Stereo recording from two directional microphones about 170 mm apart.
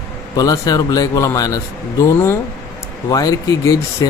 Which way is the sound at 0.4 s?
20° left (ahead or behind).